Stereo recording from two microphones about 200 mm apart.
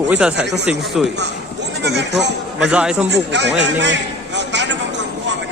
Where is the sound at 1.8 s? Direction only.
60° right (ahead or behind).